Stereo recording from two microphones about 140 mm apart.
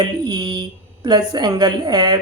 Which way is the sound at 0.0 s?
30° right (ahead or behind).